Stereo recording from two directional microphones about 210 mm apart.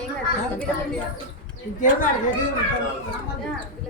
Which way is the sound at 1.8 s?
40° left (ahead or behind).